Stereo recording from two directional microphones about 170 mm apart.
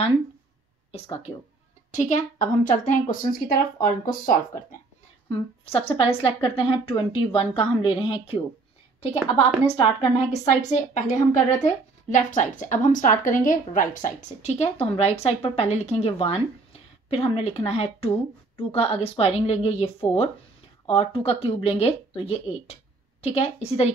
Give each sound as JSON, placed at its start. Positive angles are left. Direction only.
{"t": 0.9, "sound": "a woman's voice", "side_deg": 35}
{"t": 5.3, "sound": "speech", "side_deg": 35}
{"t": 9.8, "sound": "a woman's voice", "side_deg": 40}